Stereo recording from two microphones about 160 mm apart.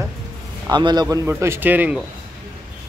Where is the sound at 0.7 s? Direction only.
25° right (ahead or behind).